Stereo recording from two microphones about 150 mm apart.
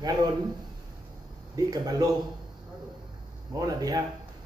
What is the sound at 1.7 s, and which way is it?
Speech, 25° right (ahead or behind).